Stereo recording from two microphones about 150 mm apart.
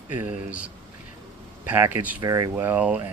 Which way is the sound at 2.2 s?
25° right (ahead or behind).